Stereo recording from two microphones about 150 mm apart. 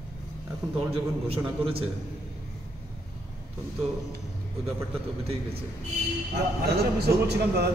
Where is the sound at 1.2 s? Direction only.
35° right (ahead or behind).